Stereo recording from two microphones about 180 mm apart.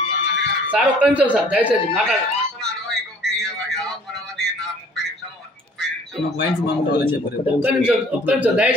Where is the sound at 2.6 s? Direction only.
Centre (ahead or behind).